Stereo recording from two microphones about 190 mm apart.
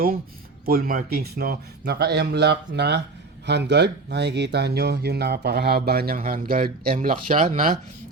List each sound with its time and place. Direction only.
0.6 s speech: 50° right (ahead or behind)